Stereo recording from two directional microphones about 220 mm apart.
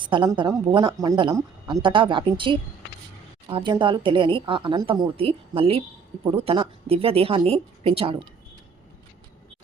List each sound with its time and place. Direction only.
0.0 s a woman's voice: 20° right (ahead or behind)